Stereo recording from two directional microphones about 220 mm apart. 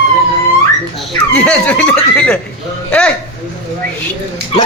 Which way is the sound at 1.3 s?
5° left (ahead or behind).